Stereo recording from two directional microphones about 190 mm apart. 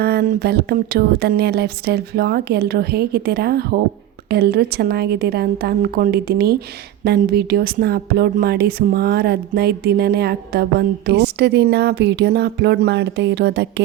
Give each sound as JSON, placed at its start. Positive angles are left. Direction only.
{"t": 0.0, "sound": "speech", "side_deg": -55}